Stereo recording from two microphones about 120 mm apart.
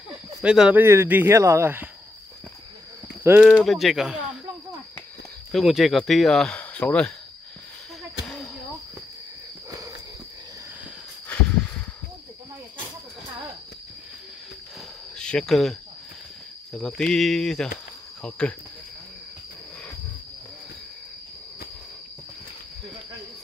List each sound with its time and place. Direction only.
0.4 s speech: 10° right (ahead or behind)
3.4 s speech: centre (ahead or behind)
5.5 s speech: centre (ahead or behind)
9.7 s walk: 30° right (ahead or behind)
11.2 s a sound: 10° left (ahead or behind)
15.1 s speech: 5° left (ahead or behind)
16.7 s speech: 5° left (ahead or behind)